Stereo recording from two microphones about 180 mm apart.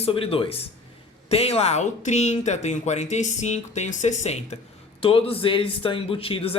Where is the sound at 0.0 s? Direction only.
30° left (ahead or behind).